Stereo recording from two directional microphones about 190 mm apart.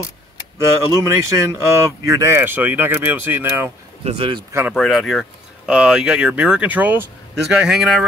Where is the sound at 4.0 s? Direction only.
30° right (ahead or behind).